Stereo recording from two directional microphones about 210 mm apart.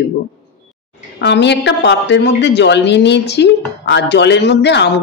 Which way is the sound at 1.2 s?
55° left (ahead or behind).